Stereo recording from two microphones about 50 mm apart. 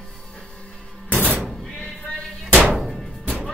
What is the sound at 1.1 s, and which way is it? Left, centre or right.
Door, right.